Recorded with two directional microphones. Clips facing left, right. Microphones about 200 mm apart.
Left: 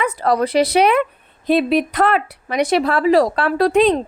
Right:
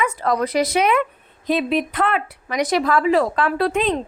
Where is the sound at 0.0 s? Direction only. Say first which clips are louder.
Left 3 dB; 35° left (ahead or behind).